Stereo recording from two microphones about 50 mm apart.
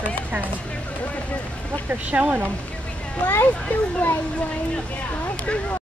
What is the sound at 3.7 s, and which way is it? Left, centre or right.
Speech, left.